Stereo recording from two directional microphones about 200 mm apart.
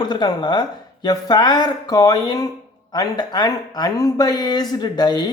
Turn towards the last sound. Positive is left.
turn(degrees=20)  # may be behind; listen again after turning